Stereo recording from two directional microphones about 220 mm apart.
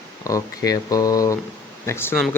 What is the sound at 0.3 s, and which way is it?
A man's voice, 15° left (ahead or behind).